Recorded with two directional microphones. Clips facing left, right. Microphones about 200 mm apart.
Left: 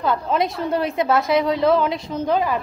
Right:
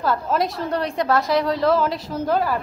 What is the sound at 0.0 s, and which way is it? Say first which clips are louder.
A woman's voice: left 1 dB; centre (ahead or behind).